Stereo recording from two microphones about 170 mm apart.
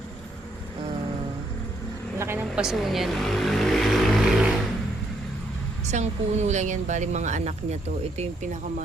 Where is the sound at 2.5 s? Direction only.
Centre (ahead or behind).